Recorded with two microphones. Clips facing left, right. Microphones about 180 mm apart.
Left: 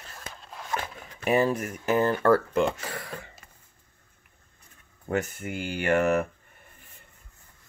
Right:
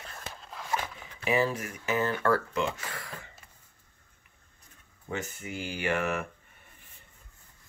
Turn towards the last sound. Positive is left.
turn(degrees=45)  # may be behind; listen again after turning